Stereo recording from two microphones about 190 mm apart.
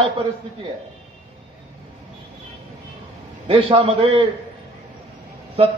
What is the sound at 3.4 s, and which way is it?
Speech, 25° right (ahead or behind).